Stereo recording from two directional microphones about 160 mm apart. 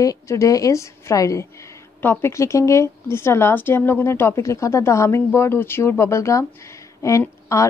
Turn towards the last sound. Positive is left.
turn(degrees=20)  # may be behind; listen again after turning